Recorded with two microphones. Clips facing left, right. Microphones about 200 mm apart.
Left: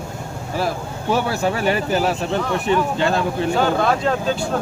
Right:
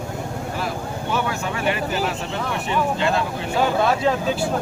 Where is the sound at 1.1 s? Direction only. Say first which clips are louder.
Left 6 dB; 35° left (ahead or behind).